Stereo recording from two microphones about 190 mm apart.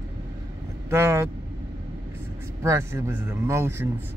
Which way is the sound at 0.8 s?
15° right (ahead or behind).